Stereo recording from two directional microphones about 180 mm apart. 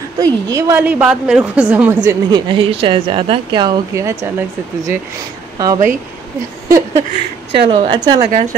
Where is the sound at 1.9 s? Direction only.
20° right (ahead or behind).